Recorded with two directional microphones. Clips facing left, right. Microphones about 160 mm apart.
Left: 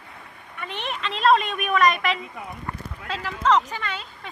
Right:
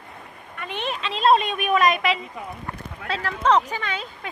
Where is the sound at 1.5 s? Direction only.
20° right (ahead or behind).